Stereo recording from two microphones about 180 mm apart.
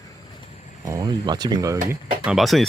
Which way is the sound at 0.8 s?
20° right (ahead or behind).